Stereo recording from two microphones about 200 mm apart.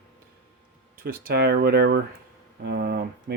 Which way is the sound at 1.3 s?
55° right (ahead or behind).